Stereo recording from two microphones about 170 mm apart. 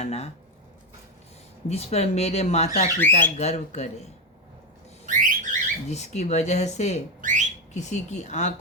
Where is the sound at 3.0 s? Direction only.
10° left (ahead or behind).